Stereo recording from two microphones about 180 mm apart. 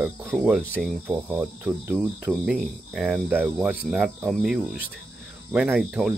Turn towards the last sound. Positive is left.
turn(degrees=-5)  # may be behind; listen again after turning